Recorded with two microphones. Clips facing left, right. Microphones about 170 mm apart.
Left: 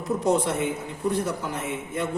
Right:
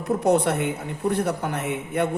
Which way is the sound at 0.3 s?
60° right (ahead or behind).